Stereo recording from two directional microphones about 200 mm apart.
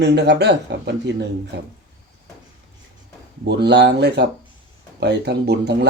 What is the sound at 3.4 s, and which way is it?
Speech, 55° right (ahead or behind).